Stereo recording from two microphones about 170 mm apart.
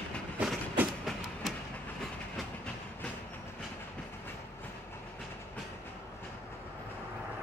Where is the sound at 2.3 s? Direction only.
5° left (ahead or behind).